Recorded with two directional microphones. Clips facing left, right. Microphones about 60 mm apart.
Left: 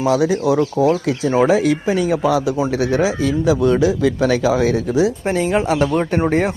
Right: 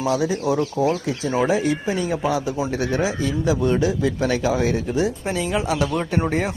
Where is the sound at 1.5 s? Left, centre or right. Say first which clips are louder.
Left 5 dB; left.